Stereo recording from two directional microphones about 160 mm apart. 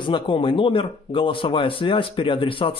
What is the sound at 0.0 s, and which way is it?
A man's voice, 30° left (ahead or behind).